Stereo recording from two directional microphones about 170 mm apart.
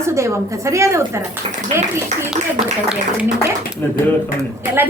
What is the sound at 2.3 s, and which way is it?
Speech, 5° right (ahead or behind).